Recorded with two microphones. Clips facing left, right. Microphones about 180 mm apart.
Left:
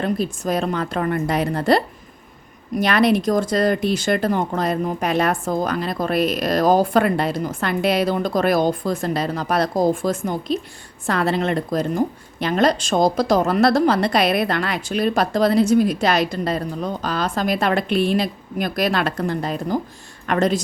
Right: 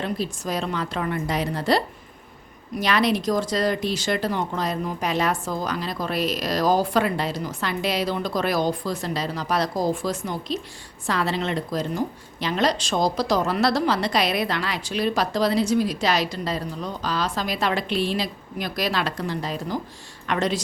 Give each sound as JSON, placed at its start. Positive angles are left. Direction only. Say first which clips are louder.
{"t": 0.0, "sound": "a woman's voice", "louder": "left 5 dB", "side_deg": 50}
{"t": 2.8, "sound": "a woman's voice", "louder": "left 4 dB", "side_deg": 55}